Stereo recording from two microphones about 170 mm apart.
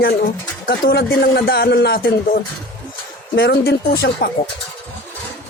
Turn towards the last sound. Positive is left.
turn(degrees=65)  # may be behind; listen again after turning